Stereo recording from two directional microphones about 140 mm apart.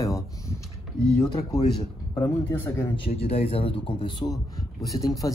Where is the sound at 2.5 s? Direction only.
20° left (ahead or behind).